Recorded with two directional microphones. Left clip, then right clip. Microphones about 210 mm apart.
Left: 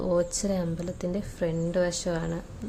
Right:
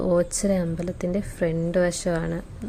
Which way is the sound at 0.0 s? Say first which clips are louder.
Right 4 dB; 15° right (ahead or behind).